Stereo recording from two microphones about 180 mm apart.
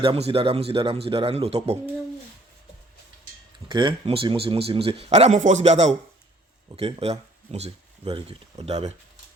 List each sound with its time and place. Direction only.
0.0 s speech: 30° right (ahead or behind)
3.7 s speech: 25° right (ahead or behind)